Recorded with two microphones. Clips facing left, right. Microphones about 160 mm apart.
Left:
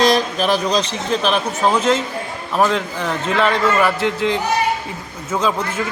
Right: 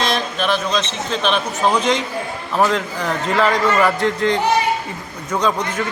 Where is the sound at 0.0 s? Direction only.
40° left (ahead or behind).